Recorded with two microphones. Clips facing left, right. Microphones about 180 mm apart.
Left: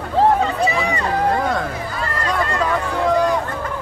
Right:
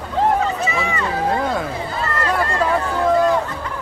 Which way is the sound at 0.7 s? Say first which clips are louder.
Left 2 dB; 35° left (ahead or behind).